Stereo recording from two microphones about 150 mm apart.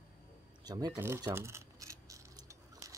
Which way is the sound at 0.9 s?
20° right (ahead or behind).